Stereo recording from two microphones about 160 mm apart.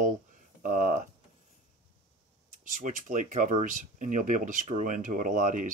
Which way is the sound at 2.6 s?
55° right (ahead or behind).